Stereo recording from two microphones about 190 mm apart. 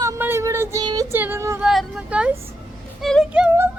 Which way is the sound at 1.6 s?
Centre (ahead or behind).